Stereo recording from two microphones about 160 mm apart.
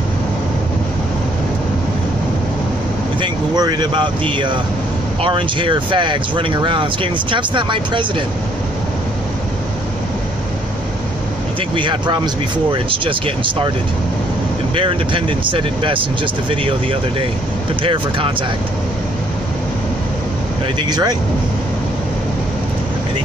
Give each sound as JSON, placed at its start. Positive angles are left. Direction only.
{"t": 3.2, "sound": "speech", "side_deg": -25}
{"t": 11.7, "sound": "speech", "side_deg": -30}
{"t": 14.8, "sound": "speech", "side_deg": -30}
{"t": 20.9, "sound": "speech", "side_deg": -25}